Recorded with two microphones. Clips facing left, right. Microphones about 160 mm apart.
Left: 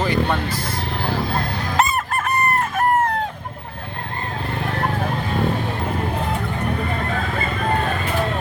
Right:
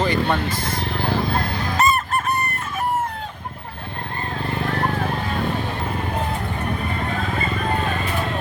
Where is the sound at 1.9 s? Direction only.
90° left.